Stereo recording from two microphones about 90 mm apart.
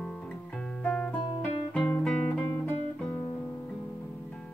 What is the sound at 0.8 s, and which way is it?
Music, 10° left (ahead or behind).